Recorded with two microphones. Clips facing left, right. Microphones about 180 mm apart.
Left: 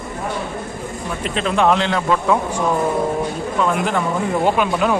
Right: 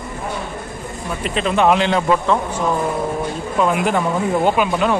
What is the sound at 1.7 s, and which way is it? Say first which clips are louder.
Speech: right 2 dB; 15° right (ahead or behind).